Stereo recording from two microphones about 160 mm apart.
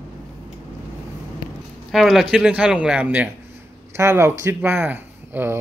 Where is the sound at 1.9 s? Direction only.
Centre (ahead or behind).